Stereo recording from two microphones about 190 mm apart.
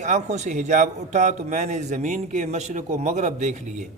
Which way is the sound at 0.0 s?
40° right (ahead or behind).